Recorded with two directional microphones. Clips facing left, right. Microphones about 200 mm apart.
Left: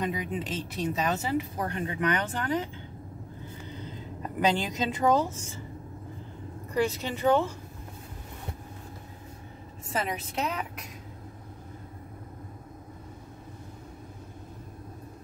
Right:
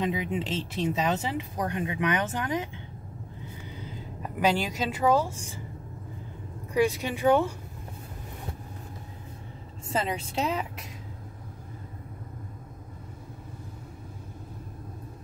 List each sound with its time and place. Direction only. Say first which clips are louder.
0.4 s speech: right 2 dB; 25° right (ahead or behind)
3.7 s speech: left 1 dB; 10° right (ahead or behind)
6.7 s speech: right 3 dB; 15° right (ahead or behind)
9.8 s speech: right 2 dB; 30° right (ahead or behind)